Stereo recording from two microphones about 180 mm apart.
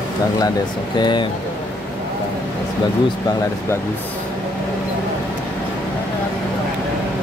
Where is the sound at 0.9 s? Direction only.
25° left (ahead or behind).